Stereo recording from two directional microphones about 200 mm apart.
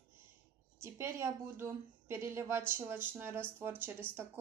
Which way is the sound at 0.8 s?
15° right (ahead or behind).